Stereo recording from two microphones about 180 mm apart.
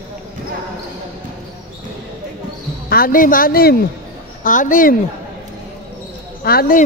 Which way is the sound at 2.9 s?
55° left (ahead or behind).